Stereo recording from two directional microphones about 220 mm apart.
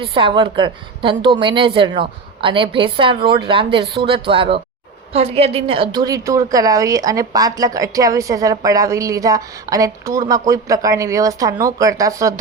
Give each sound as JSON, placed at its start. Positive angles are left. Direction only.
{"t": 0.0, "sound": "a woman's voice", "side_deg": -25}